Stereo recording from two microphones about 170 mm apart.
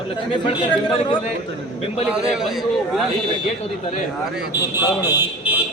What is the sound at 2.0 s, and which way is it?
A man's voice, 5° right (ahead or behind).